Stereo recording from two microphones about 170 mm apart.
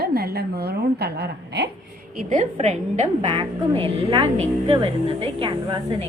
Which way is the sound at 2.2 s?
50° right (ahead or behind).